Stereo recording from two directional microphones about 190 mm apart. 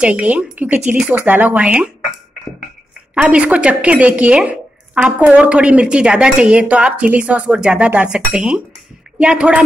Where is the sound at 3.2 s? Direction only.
5° right (ahead or behind).